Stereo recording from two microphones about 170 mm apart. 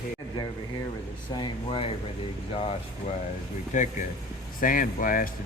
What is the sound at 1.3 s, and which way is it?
Speech, 30° left (ahead or behind).